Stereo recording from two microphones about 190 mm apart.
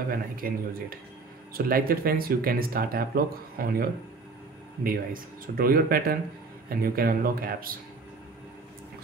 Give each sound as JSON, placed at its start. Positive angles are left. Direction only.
{"t": 0.1, "sound": "speech", "side_deg": -50}